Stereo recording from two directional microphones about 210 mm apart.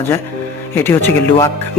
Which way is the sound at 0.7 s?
10° left (ahead or behind).